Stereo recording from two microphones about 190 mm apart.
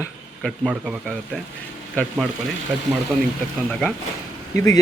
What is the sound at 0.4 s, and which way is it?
Speech, 5° left (ahead or behind).